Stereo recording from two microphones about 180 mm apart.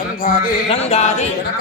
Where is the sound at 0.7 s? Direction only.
35° left (ahead or behind).